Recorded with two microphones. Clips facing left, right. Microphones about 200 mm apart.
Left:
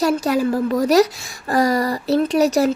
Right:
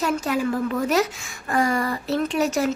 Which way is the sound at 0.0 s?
35° left (ahead or behind).